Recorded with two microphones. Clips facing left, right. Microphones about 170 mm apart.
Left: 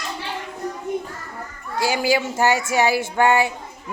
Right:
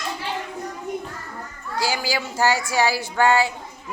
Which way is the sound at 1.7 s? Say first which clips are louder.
Left 5 dB; 20° left (ahead or behind).